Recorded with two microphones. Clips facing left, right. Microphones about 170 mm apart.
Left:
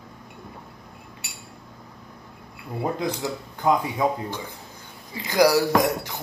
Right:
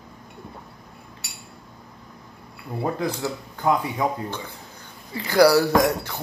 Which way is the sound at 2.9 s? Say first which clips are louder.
Right 1 dB; 20° left (ahead or behind).